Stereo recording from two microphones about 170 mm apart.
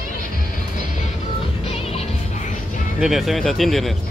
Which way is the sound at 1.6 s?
35° left (ahead or behind).